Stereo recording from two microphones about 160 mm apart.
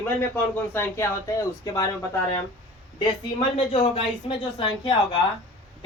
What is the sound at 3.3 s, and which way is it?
Speech, 35° left (ahead or behind).